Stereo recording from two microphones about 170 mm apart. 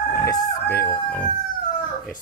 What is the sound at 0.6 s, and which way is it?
Speech, 10° left (ahead or behind).